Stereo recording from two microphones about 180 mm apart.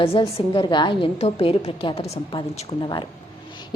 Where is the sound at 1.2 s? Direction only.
35° left (ahead or behind).